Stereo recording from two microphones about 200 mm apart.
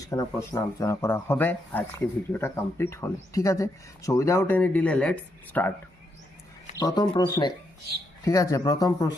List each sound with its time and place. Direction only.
0.1 s speech: 15° left (ahead or behind)
6.7 s speech: 20° left (ahead or behind)